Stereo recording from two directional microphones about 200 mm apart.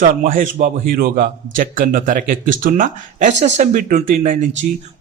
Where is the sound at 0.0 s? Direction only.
45° right (ahead or behind).